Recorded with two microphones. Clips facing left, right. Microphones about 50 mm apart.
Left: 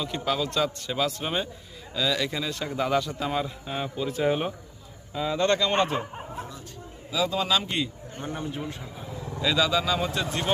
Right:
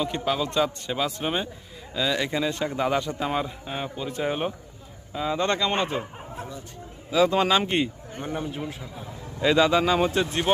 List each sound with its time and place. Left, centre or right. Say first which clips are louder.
0.0 s speech: right 2 dB; centre
5.7 s a sound: left 2 dB; centre
7.1 s speech: right 5 dB; right
8.1 s speech: right 2 dB; centre
9.4 s speech: right 5 dB; right